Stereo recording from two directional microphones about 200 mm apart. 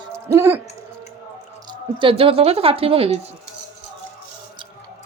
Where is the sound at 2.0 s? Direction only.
25° right (ahead or behind).